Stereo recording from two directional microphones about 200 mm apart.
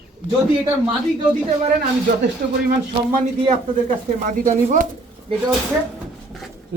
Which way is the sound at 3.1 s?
40° right (ahead or behind).